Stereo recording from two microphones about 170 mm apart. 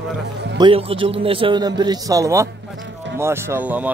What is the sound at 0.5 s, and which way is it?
A man's voice, 30° right (ahead or behind).